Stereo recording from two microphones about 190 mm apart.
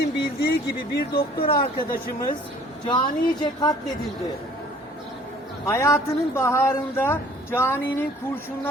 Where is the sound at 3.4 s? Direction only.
20° left (ahead or behind).